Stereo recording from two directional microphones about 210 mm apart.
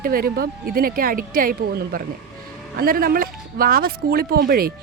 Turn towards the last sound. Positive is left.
turn(degrees=-45)  # may be behind; listen again after turning